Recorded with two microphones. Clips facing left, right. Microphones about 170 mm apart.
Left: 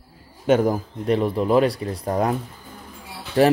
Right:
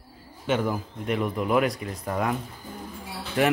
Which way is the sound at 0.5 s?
40° left (ahead or behind).